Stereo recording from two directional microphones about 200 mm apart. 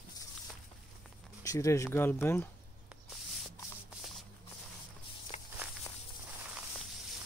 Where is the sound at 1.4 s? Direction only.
15° left (ahead or behind).